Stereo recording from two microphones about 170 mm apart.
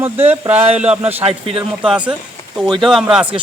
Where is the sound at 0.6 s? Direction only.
40° right (ahead or behind).